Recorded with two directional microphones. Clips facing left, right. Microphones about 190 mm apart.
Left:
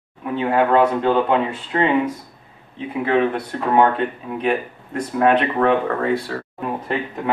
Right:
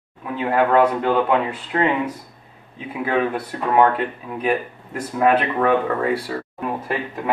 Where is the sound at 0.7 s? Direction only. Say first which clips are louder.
Even; 5° right (ahead or behind).